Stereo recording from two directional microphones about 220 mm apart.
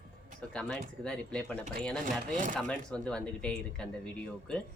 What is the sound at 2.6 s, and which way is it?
Speech, 5° left (ahead or behind).